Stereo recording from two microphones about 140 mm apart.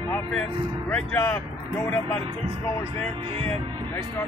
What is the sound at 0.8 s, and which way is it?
Speech, 15° left (ahead or behind).